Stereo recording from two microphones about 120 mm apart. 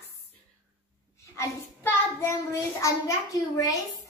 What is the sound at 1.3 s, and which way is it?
A child's voice, 20° left (ahead or behind).